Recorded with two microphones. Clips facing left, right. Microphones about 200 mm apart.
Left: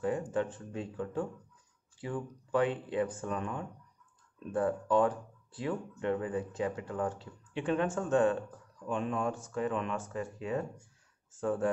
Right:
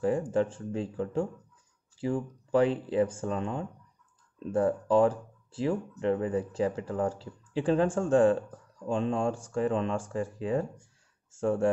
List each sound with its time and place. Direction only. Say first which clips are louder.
0.0 s speech: right 5 dB; 30° right (ahead or behind)